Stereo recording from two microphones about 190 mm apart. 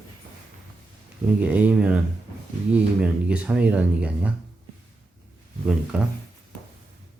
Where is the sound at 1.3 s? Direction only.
5° right (ahead or behind).